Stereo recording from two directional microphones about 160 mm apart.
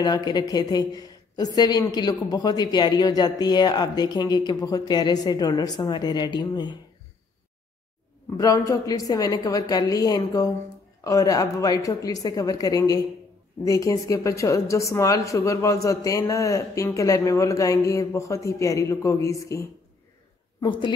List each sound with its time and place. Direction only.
0.0 s a woman's voice: 25° left (ahead or behind)
8.4 s a woman's voice: 20° left (ahead or behind)